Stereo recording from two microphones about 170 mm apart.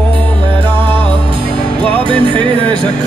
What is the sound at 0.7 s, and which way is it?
Music, 30° right (ahead or behind).